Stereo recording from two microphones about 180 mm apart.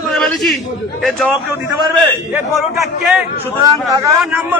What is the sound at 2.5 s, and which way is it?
Speech, centre (ahead or behind).